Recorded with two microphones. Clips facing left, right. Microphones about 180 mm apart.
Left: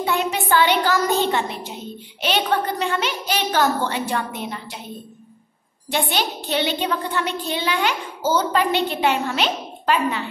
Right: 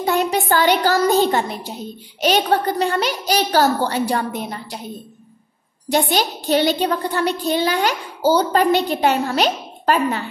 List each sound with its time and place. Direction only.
0.0 s a sound: 40° right (ahead or behind)
2.2 s speech: 40° right (ahead or behind)
5.9 s speech: 40° right (ahead or behind)